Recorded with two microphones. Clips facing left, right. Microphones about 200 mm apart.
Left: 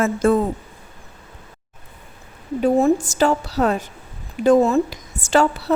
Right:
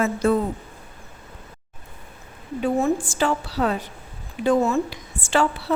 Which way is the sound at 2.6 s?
40° left (ahead or behind).